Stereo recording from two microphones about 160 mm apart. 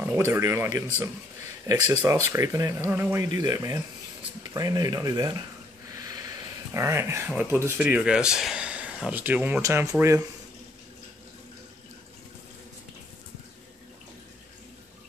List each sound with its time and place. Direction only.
0.0 s speech: 15° right (ahead or behind)